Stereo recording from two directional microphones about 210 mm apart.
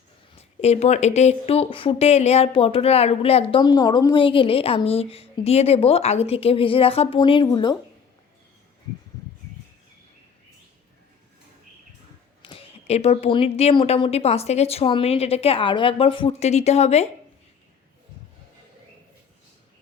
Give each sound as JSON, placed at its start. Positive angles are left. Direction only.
{"t": 0.3, "sound": "speech", "side_deg": 30}
{"t": 12.4, "sound": "speech", "side_deg": 25}